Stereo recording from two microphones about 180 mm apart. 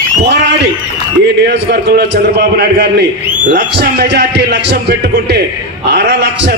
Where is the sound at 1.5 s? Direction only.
70° right (ahead or behind).